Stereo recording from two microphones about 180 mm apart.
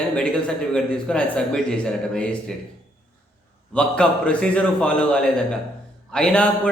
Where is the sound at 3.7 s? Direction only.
5° left (ahead or behind).